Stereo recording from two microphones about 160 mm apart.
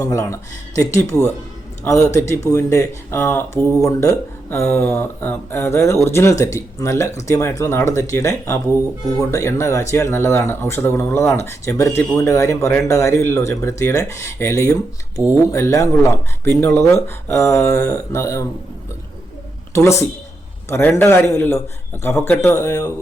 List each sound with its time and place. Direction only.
0.0 s speech: 20° left (ahead or behind)
19.7 s speech: 20° left (ahead or behind)